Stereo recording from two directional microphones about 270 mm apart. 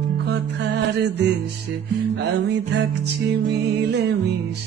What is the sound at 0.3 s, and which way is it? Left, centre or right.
Music, right.